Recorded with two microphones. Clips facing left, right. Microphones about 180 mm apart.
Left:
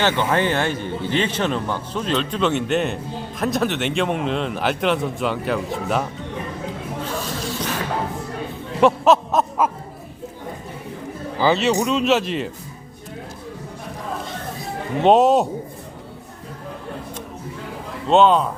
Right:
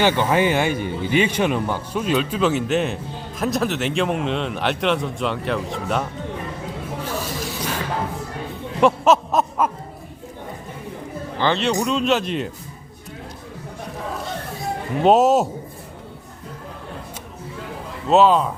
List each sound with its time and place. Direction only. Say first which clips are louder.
0.0 s speech: right 2 dB; 10° right (ahead or behind)
8.8 s a sound: left 1 dB; centre (ahead or behind)
11.3 s speech: left 2 dB; 5° left (ahead or behind)
14.6 s speech: even; centre (ahead or behind)
18.1 s speech: even; centre (ahead or behind)